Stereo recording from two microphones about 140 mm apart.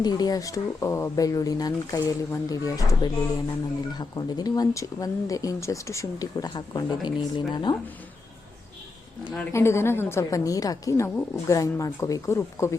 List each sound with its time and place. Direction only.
0.0 s speech: 30° left (ahead or behind)
9.5 s speech: 20° left (ahead or behind)